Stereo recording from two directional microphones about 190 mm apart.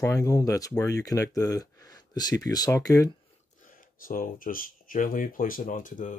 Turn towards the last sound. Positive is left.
turn(degrees=45)  # may be behind; listen again after turning